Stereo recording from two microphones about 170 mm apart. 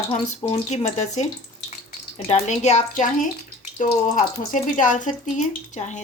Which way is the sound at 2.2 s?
40° left (ahead or behind).